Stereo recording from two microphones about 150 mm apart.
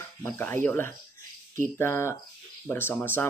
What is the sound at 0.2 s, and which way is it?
Speech, 15° left (ahead or behind).